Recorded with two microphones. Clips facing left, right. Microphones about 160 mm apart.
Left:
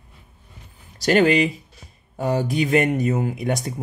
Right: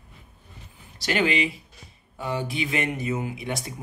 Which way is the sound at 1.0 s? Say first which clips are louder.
Left 7 dB; 45° left (ahead or behind).